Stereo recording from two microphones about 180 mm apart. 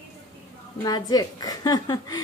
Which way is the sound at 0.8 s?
20° left (ahead or behind).